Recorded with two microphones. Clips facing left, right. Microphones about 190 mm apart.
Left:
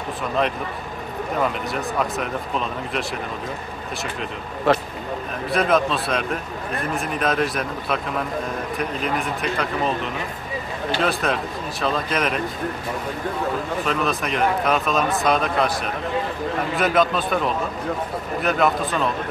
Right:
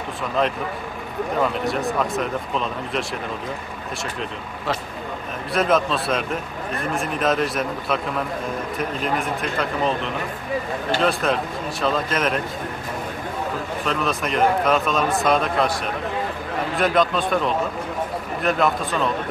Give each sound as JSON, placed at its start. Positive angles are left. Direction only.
{"t": 0.4, "sound": "a man's voice", "side_deg": 0}
{"t": 1.7, "sound": "a man's voice", "side_deg": 0}
{"t": 4.7, "sound": "speech", "side_deg": 60}
{"t": 5.5, "sound": "a man's voice", "side_deg": 0}
{"t": 11.0, "sound": "a man's voice", "side_deg": 0}
{"t": 13.8, "sound": "a man's voice", "side_deg": 0}
{"t": 18.4, "sound": "a man's voice", "side_deg": 0}